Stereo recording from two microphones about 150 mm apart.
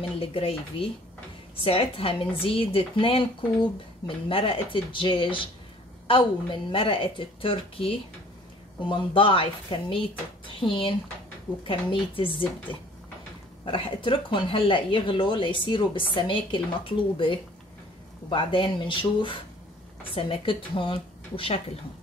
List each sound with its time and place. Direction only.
0.1 s speech: 40° left (ahead or behind)
4.3 s speech: 35° left (ahead or behind)
13.7 s speech: 35° left (ahead or behind)